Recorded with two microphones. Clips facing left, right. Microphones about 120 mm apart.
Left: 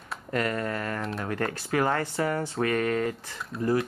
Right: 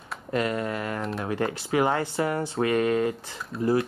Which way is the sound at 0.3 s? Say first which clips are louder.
Right 2 dB; 20° right (ahead or behind).